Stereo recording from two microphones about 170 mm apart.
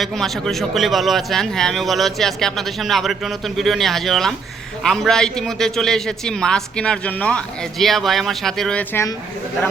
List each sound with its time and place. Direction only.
0.0 s a man's voice: centre (ahead or behind)